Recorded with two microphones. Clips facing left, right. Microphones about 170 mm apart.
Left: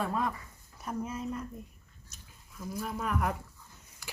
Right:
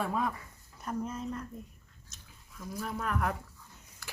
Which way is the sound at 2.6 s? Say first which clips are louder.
Left 1 dB; 5° left (ahead or behind).